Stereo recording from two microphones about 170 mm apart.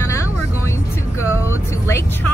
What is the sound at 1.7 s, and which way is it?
Vehicle, 15° left (ahead or behind).